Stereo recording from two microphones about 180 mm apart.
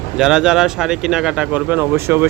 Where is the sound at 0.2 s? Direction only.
5° right (ahead or behind).